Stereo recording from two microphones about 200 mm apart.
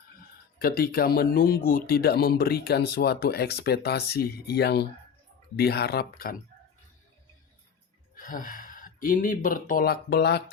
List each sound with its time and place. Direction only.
0.6 s speech: 50° left (ahead or behind)
8.1 s speech: 45° left (ahead or behind)